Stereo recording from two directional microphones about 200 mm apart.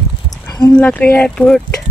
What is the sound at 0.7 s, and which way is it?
Speech, 5° left (ahead or behind).